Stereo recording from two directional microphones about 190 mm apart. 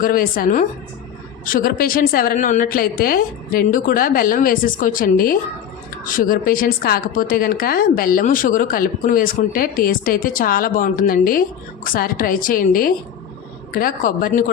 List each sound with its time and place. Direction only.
0.0 s a woman's voice: 50° left (ahead or behind)